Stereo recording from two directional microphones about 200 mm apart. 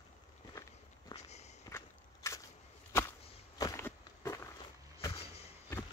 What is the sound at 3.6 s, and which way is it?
Walk, 15° left (ahead or behind).